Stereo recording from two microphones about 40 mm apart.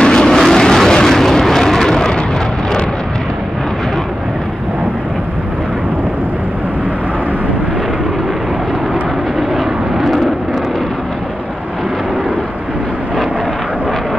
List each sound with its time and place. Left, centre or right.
0.0 s vehicle: centre
9.9 s vehicle: centre